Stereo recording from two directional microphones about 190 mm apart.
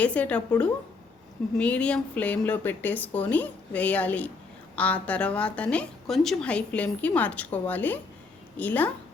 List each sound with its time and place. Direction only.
0.0 s a woman's voice: 5° left (ahead or behind)
1.5 s a woman's voice: 5° left (ahead or behind)